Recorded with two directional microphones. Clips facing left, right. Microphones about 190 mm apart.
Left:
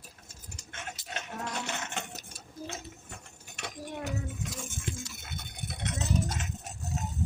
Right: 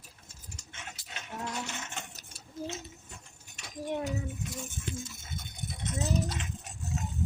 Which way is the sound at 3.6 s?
70° left (ahead or behind).